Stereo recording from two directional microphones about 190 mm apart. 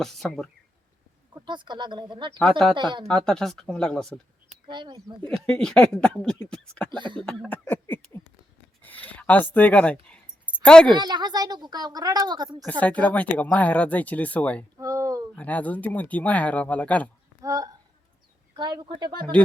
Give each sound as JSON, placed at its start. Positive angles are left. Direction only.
{"t": 0.0, "sound": "speech", "side_deg": 0}
{"t": 1.5, "sound": "speech", "side_deg": -25}
{"t": 3.1, "sound": "speech", "side_deg": 5}
{"t": 4.7, "sound": "speech", "side_deg": -20}
{"t": 5.3, "sound": "speech", "side_deg": 5}
{"t": 6.9, "sound": "speech", "side_deg": -25}
{"t": 7.2, "sound": "a sound", "side_deg": 5}
{"t": 10.6, "sound": "a woman's voice", "side_deg": 5}
{"t": 10.9, "sound": "speech", "side_deg": -20}
{"t": 12.8, "sound": "speech", "side_deg": 5}
{"t": 14.8, "sound": "a sound", "side_deg": -15}
{"t": 15.4, "sound": "speech", "side_deg": 10}
{"t": 17.4, "sound": "speech", "side_deg": -20}